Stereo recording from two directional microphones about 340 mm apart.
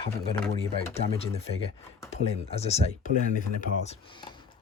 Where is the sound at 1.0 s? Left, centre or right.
Centre.